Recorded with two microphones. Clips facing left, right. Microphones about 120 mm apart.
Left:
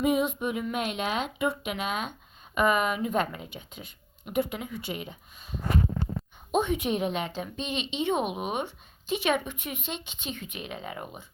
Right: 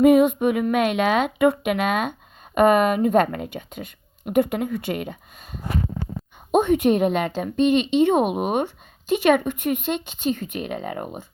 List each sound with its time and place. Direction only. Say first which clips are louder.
0.0 s a woman's voice: right 11 dB; 55° right (ahead or behind)